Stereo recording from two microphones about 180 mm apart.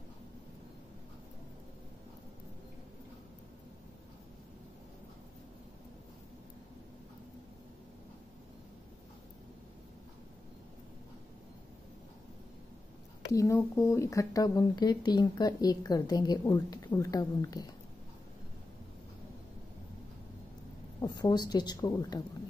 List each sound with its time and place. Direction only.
13.3 s speech: 15° left (ahead or behind)
21.0 s speech: 25° left (ahead or behind)